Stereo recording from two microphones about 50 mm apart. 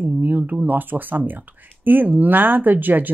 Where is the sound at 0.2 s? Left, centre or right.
Right.